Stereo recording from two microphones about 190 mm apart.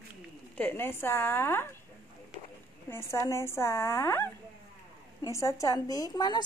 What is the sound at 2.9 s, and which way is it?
A woman's voice, 15° left (ahead or behind).